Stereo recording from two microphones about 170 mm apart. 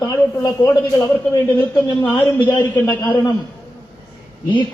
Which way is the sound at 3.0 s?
25° left (ahead or behind).